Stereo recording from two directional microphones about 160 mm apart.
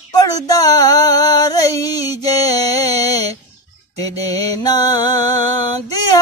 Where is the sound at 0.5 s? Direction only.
25° left (ahead or behind).